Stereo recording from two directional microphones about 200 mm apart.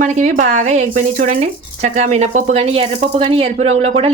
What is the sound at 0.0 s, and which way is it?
A woman's voice, 40° right (ahead or behind).